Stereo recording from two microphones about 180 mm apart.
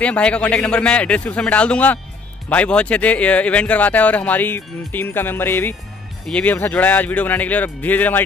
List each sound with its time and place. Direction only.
0.0 s speech: 5° left (ahead or behind)